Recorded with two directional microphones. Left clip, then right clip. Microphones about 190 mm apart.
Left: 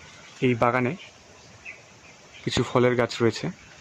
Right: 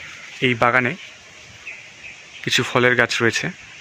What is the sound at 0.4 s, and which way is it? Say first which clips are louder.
Speech: right 6 dB; centre (ahead or behind).